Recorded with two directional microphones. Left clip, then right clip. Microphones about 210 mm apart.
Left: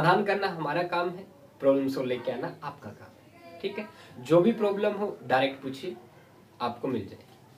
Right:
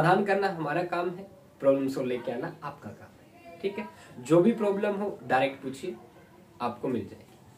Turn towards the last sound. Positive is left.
turn(degrees=-5)  # may be behind; listen again after turning